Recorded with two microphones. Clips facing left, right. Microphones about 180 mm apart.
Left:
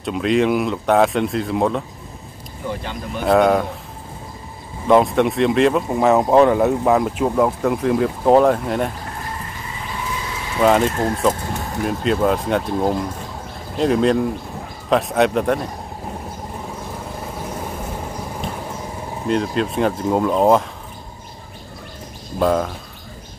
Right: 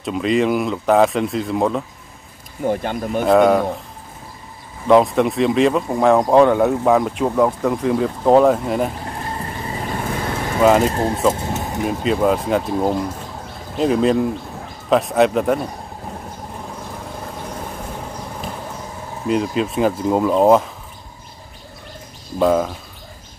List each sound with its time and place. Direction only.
0.0 s speech: centre (ahead or behind)
2.6 s speech: 50° right (ahead or behind)
3.3 s speech: centre (ahead or behind)
4.8 s speech: centre (ahead or behind)
9.7 s vehicle: 50° right (ahead or behind)
10.6 s speech: 5° right (ahead or behind)
11.4 s vehicle: 20° right (ahead or behind)
11.8 s speech: centre (ahead or behind)
19.2 s speech: 5° right (ahead or behind)
22.4 s speech: 5° right (ahead or behind)